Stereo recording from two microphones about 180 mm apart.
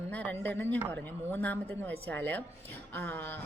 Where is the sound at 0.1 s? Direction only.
10° left (ahead or behind).